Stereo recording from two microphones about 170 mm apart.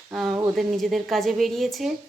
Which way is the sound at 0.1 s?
Centre (ahead or behind).